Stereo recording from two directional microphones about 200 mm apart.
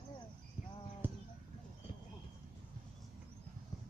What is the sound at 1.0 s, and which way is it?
Bird, 10° right (ahead or behind).